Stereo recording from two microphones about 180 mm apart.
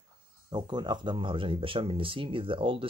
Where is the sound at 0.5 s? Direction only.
25° right (ahead or behind).